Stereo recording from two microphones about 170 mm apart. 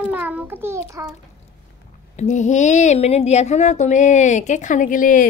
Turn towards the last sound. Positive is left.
turn(degrees=50)  # may be behind; listen again after turning